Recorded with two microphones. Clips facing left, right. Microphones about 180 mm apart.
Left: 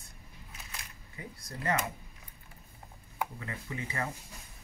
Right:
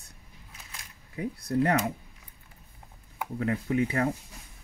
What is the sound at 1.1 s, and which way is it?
Speech, 70° right (ahead or behind).